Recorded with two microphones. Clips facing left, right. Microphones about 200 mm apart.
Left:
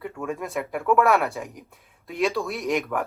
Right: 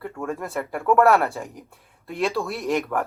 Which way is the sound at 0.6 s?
5° left (ahead or behind).